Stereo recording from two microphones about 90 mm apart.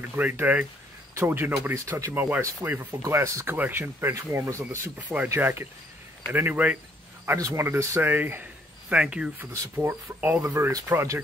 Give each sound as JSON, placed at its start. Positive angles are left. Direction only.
{"t": 0.1, "sound": "speech", "side_deg": -20}
{"t": 7.3, "sound": "speech", "side_deg": -40}
{"t": 8.9, "sound": "speech", "side_deg": -10}
{"t": 9.8, "sound": "speech", "side_deg": -25}